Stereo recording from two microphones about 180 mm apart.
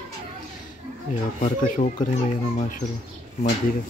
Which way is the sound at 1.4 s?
45° left (ahead or behind).